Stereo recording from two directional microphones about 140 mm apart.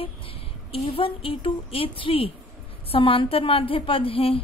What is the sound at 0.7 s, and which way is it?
A woman's voice, 40° left (ahead or behind).